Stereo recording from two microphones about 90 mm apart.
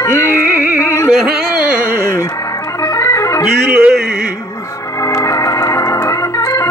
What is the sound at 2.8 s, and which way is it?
Organ, 35° left (ahead or behind).